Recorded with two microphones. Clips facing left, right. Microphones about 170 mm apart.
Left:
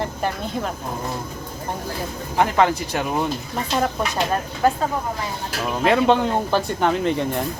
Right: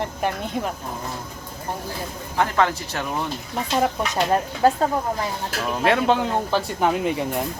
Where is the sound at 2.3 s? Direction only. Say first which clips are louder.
Left 3 dB; 15° left (ahead or behind).